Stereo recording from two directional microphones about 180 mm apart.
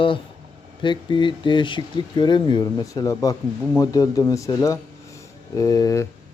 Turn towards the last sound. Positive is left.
turn(degrees=20)  # may be behind; listen again after turning